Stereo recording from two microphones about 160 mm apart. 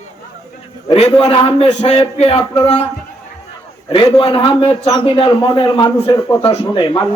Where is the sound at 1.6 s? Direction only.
45° left (ahead or behind).